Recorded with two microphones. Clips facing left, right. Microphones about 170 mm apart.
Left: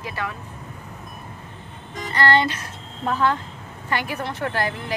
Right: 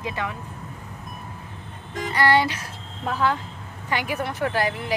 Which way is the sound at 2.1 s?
10° right (ahead or behind).